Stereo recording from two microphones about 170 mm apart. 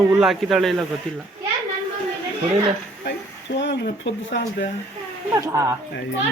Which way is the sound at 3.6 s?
90° left.